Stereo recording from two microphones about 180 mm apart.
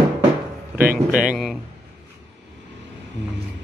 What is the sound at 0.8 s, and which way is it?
Speech, 50° right (ahead or behind).